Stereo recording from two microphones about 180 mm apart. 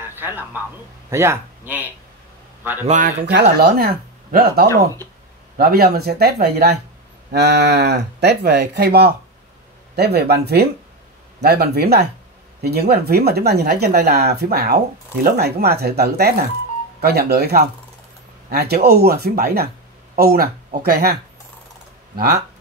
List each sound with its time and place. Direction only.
0.0 s a man's voice: 10° right (ahead or behind)
2.9 s speech: 45° right (ahead or behind)
3.5 s speech: 60° right (ahead or behind)